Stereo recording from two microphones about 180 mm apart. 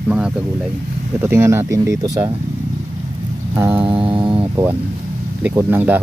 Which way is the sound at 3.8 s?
30° right (ahead or behind).